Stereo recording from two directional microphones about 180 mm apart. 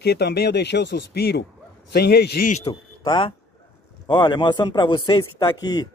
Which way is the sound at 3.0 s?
30° left (ahead or behind).